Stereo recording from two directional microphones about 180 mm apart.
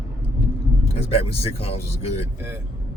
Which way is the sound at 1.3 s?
35° left (ahead or behind).